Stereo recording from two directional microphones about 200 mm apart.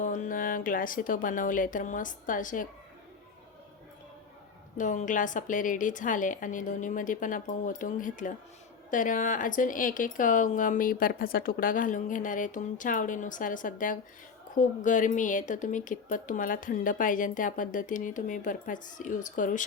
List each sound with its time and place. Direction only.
0.0 s speech: 40° left (ahead or behind)
4.8 s speech: 40° left (ahead or behind)